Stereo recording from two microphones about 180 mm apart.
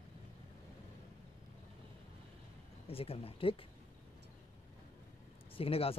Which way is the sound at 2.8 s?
35° left (ahead or behind).